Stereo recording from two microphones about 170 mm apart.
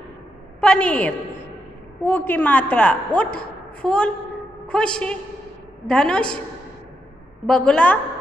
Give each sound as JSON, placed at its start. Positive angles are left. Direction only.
{"t": 0.6, "sound": "a woman's voice", "side_deg": 5}
{"t": 7.4, "sound": "a woman's voice", "side_deg": 5}